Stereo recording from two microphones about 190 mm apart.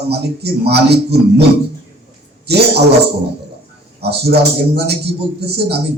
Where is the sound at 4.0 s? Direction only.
60° right (ahead or behind).